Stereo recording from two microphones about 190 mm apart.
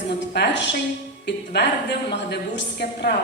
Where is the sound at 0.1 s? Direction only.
65° left (ahead or behind).